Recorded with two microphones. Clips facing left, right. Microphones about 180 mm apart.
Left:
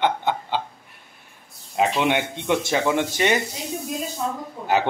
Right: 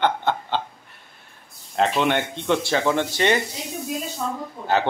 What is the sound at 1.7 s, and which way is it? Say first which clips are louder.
Speech: even; 10° left (ahead or behind).